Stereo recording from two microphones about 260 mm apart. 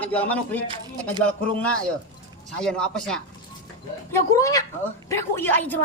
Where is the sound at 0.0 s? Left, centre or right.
Centre.